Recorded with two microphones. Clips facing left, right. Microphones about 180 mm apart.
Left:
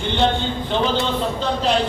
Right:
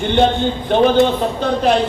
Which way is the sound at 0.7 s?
55° right (ahead or behind).